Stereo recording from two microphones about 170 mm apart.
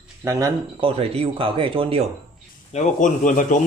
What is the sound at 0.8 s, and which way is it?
Speech, 35° right (ahead or behind).